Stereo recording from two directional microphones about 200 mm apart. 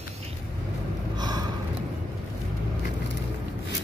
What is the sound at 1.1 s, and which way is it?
Snort, 20° right (ahead or behind).